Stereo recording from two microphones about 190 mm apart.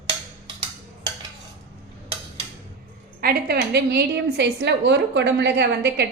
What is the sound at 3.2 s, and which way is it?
A woman's voice, 55° right (ahead or behind).